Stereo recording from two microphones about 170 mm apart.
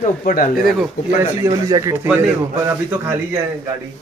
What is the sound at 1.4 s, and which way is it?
Speech, 15° right (ahead or behind).